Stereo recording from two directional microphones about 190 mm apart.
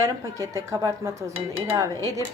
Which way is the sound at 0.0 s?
15° right (ahead or behind).